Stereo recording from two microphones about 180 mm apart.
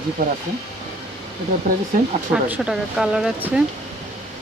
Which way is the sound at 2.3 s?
5° right (ahead or behind).